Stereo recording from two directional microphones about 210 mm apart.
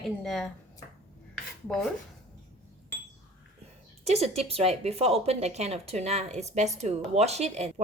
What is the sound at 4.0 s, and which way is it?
A woman's voice, 30° right (ahead or behind).